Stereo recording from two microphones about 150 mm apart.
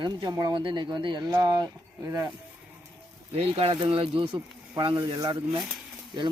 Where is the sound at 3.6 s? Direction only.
35° right (ahead or behind).